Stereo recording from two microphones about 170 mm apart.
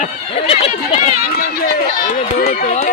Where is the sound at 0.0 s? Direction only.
35° left (ahead or behind).